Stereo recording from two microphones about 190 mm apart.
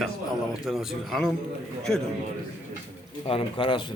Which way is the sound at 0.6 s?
Centre (ahead or behind).